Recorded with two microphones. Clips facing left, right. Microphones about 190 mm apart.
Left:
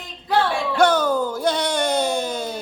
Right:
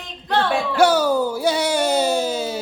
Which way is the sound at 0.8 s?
10° right (ahead or behind).